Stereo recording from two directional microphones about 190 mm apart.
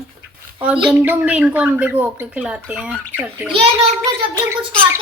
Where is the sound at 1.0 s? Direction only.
10° right (ahead or behind).